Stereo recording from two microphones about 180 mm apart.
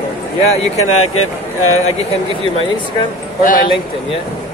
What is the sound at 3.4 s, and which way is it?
Speech, 50° left (ahead or behind).